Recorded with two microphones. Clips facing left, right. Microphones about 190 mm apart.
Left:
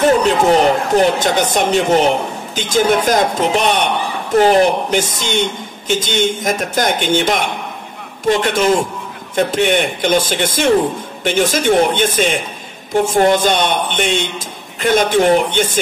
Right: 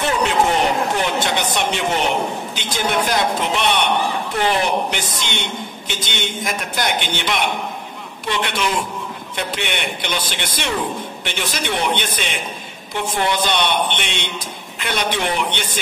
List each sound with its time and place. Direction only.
0.0 s a man's voice: 40° left (ahead or behind)